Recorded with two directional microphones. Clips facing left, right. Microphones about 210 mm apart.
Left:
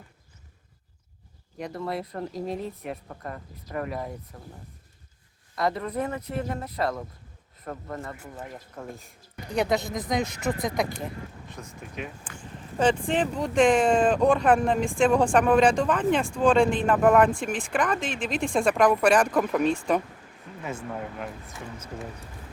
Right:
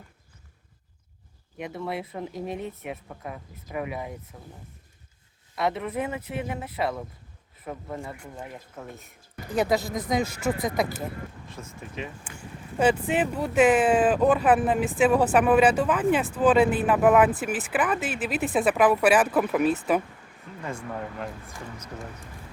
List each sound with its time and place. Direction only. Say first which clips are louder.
1.5 s speech: left 1 dB; centre (ahead or behind)
5.5 s speech: even; 5° right (ahead or behind)
12.2 s speech: even; 10° right (ahead or behind)